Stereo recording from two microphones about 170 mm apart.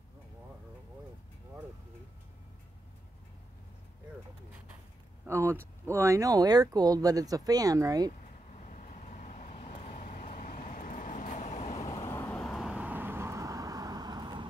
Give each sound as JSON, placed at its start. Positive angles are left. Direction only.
{"t": 5.2, "sound": "speech", "side_deg": -15}
{"t": 8.5, "sound": "vehicle", "side_deg": 45}
{"t": 11.8, "sound": "vehicle", "side_deg": 20}
{"t": 12.4, "sound": "vehicle", "side_deg": 0}